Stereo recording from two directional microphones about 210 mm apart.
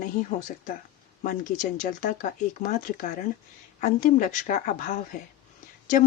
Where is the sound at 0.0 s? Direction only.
40° left (ahead or behind).